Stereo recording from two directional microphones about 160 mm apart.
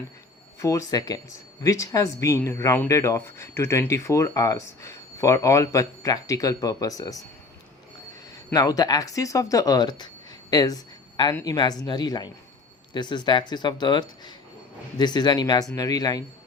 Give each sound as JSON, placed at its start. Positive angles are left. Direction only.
{"t": 0.6, "sound": "speech", "side_deg": 20}
{"t": 8.5, "sound": "speech", "side_deg": 25}